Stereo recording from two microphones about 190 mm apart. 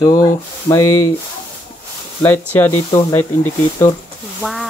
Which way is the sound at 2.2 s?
10° left (ahead or behind).